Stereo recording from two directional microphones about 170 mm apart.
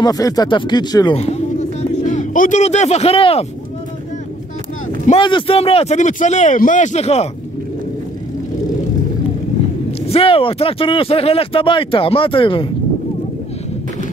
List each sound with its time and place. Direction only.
0.0 s speech: 20° left (ahead or behind)
1.1 s speech: 40° left (ahead or behind)
5.2 s speech: 30° left (ahead or behind)
10.0 s speech: 35° left (ahead or behind)